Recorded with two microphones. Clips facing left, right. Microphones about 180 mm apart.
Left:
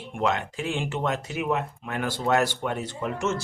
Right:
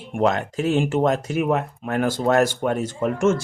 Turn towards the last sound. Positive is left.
turn(degrees=-50)  # may be behind; listen again after turning